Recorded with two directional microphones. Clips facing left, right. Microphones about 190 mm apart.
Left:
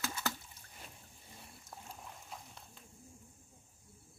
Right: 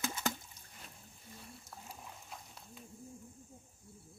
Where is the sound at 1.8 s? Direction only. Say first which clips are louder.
Left 1 dB; 5° right (ahead or behind).